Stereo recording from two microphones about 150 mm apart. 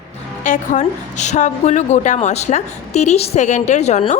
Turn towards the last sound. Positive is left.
turn(degrees=50)  # may be behind; listen again after turning